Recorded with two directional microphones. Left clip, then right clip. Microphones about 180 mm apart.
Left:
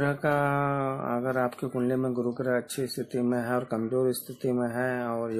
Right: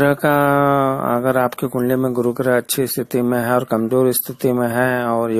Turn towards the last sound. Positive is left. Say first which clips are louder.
# right 12 dB
turn(degrees=-35)  # may be behind; listen again after turning